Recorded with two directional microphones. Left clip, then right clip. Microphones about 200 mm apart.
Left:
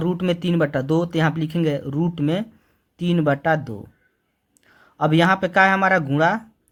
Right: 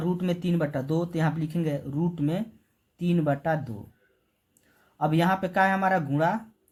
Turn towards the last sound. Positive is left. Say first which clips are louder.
# left 6 dB
turn(degrees=40)  # may be behind; listen again after turning